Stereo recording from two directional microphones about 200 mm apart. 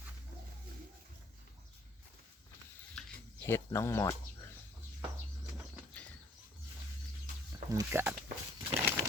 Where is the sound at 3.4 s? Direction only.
15° left (ahead or behind).